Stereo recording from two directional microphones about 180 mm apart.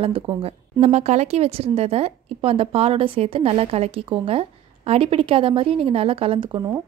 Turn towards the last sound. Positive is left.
turn(degrees=-25)  # may be behind; listen again after turning